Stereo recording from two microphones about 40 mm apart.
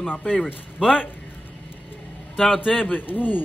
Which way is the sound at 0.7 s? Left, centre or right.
Centre.